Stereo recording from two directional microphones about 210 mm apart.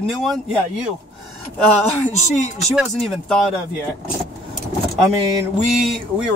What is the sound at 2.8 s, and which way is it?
Speech, centre (ahead or behind).